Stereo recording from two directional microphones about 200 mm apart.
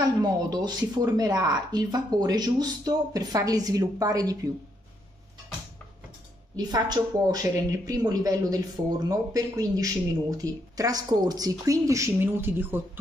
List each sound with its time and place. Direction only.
0.0 s speech: 20° right (ahead or behind)
6.5 s speech: 20° right (ahead or behind)